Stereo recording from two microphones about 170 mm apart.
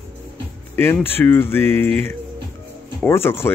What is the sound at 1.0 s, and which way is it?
Speech, 10° left (ahead or behind).